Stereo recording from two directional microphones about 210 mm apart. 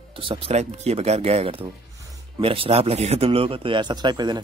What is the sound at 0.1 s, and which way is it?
Speech, 25° right (ahead or behind).